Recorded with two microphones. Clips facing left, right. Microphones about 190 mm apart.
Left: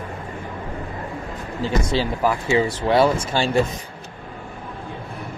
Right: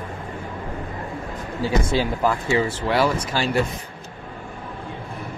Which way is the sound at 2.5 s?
20° left (ahead or behind).